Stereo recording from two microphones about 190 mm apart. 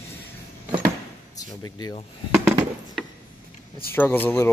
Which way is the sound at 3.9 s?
10° left (ahead or behind).